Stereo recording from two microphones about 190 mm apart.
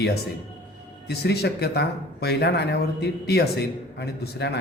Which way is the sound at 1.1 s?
60° left (ahead or behind).